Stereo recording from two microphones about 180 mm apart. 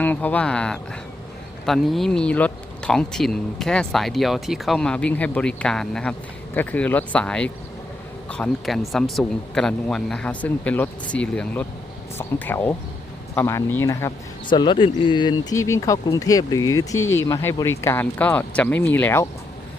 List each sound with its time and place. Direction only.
0.0 s speech: 10° left (ahead or behind)
14.4 s speech: 25° left (ahead or behind)
17.0 s speech: 90° left
17.2 s speech: 20° left (ahead or behind)